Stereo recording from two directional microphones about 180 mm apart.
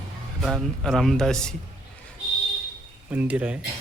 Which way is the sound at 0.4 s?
Centre (ahead or behind).